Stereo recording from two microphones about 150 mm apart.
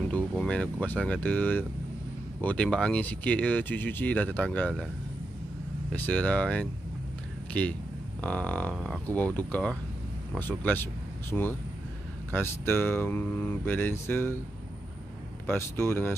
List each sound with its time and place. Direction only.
0.1 s speech: 5° left (ahead or behind)
5.9 s speech: 10° left (ahead or behind)
15.4 s speech: 15° left (ahead or behind)